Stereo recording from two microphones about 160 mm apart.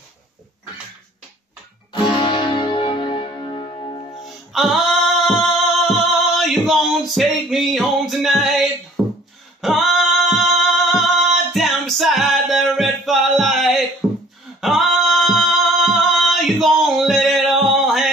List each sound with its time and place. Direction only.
2.0 s music: 30° left (ahead or behind)
4.2 s music: centre (ahead or behind)
9.0 s beatboxing: 5° right (ahead or behind)
9.6 s female singing: centre (ahead or behind)
10.9 s music: centre (ahead or behind)
14.0 s beatboxing: 5° right (ahead or behind)
14.6 s music: centre (ahead or behind)